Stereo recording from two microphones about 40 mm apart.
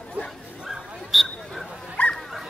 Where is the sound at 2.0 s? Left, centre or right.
Left.